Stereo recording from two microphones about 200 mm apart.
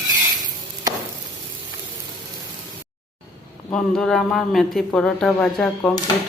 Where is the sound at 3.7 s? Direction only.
Centre (ahead or behind).